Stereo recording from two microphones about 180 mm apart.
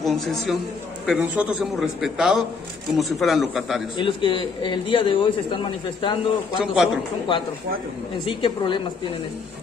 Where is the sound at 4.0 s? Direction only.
30° left (ahead or behind).